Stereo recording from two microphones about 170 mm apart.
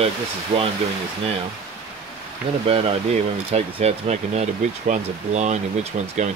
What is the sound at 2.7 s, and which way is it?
Speech, 35° right (ahead or behind).